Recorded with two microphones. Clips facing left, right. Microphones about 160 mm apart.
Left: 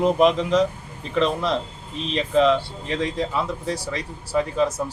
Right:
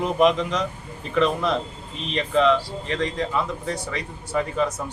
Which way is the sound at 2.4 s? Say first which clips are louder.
Even; 35° left (ahead or behind).